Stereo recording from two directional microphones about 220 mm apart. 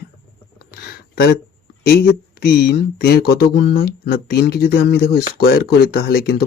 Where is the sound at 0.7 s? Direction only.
45° left (ahead or behind).